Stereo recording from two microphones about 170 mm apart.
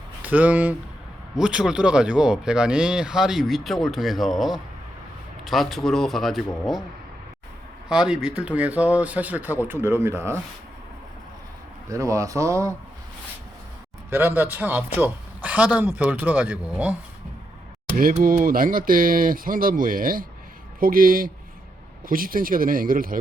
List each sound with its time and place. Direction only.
0.2 s speech: 10° right (ahead or behind)
7.9 s speech: 5° right (ahead or behind)
11.9 s speech: 20° right (ahead or behind)
14.1 s speech: 10° right (ahead or behind)
17.9 s speech: 55° right (ahead or behind)